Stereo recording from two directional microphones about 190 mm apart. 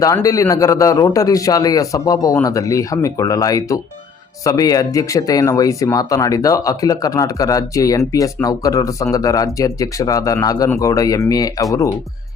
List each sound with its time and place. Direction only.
0.0 s speech: 20° left (ahead or behind)